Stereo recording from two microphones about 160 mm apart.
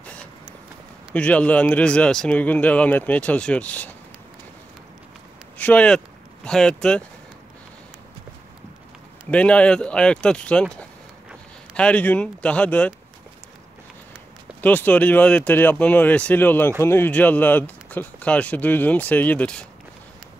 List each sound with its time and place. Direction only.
0.0 s a sound: 10° left (ahead or behind)
1.1 s speech: 10° left (ahead or behind)
5.6 s speech: 10° left (ahead or behind)
9.3 s speech: 5° left (ahead or behind)
14.6 s speech: 10° left (ahead or behind)